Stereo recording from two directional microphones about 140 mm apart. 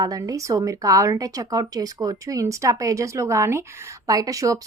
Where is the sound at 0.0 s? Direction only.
25° right (ahead or behind).